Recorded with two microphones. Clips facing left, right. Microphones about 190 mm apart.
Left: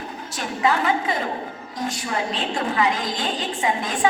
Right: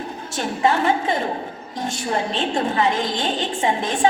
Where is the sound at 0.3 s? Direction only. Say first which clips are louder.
Right 2 dB; 25° right (ahead or behind).